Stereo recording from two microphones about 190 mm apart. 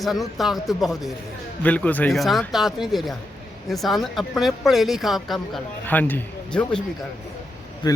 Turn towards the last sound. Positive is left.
turn(degrees=25)  # may be behind; listen again after turning